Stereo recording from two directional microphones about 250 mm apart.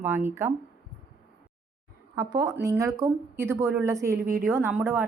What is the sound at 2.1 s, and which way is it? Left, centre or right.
A woman's voice, centre.